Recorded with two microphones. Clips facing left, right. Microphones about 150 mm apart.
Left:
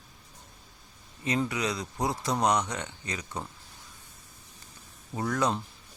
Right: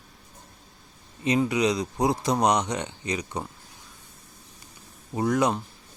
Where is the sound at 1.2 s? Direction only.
20° right (ahead or behind).